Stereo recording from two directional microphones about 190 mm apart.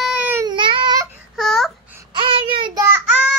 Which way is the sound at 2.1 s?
25° right (ahead or behind).